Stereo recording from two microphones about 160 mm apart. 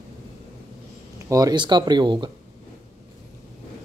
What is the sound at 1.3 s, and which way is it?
Speech, 25° right (ahead or behind).